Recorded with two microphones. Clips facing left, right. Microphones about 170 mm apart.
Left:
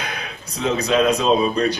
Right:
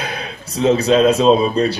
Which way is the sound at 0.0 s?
30° right (ahead or behind).